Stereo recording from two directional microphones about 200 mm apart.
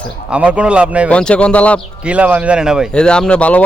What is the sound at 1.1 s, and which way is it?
Speech, 5° left (ahead or behind).